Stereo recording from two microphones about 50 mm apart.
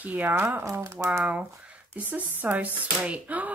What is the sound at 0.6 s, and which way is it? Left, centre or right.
Speech, right.